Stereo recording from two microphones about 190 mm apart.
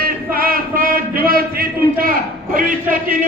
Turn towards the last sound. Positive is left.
turn(degrees=-45)  # may be behind; listen again after turning